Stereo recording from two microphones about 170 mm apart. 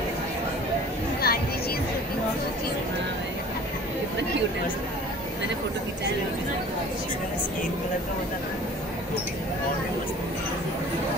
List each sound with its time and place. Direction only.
1.2 s music: 65° left (ahead or behind)